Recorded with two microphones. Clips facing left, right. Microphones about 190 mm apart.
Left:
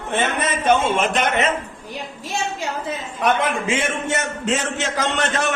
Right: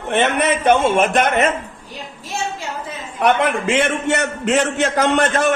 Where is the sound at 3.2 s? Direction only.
65° right (ahead or behind).